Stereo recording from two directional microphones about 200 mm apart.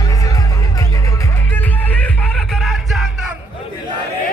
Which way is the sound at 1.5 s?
5° left (ahead or behind).